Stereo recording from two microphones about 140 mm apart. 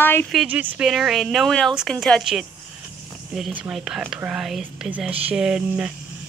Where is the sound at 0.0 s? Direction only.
15° left (ahead or behind).